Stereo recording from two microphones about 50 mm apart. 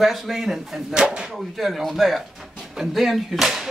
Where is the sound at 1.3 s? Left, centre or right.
Centre.